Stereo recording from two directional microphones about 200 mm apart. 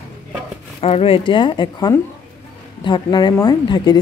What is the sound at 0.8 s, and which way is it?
Speech, 30° left (ahead or behind).